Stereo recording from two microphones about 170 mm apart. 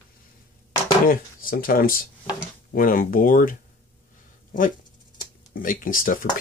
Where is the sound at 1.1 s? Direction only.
55° left (ahead or behind).